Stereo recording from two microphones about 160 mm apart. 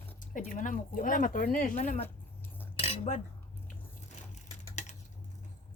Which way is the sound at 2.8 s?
40° left (ahead or behind).